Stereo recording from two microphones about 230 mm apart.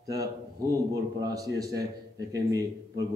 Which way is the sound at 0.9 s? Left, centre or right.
Centre.